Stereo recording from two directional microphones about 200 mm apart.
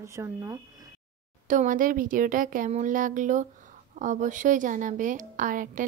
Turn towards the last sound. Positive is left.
turn(degrees=-40)  # may be behind; listen again after turning